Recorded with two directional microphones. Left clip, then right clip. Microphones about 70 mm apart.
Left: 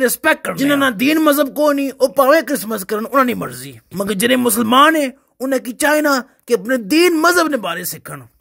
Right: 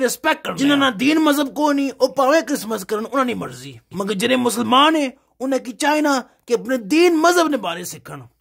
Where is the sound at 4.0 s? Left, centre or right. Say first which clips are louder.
Left 3 dB; left.